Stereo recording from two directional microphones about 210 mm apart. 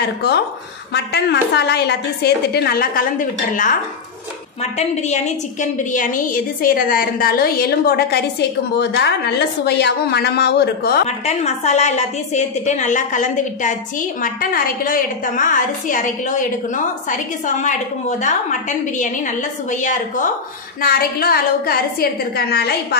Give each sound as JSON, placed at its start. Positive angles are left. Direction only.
{"t": 0.0, "sound": "a woman's voice", "side_deg": 50}
{"t": 4.7, "sound": "a woman's voice", "side_deg": 35}
{"t": 11.1, "sound": "a woman's voice", "side_deg": 35}